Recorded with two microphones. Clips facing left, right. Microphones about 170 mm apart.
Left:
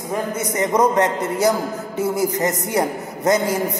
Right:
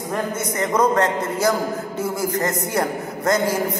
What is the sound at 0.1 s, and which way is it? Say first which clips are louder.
A man's voice: left 2 dB; 20° left (ahead or behind).